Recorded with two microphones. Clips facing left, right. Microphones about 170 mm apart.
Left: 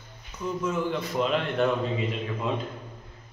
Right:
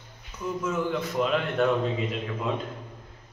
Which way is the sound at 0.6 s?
Centre (ahead or behind).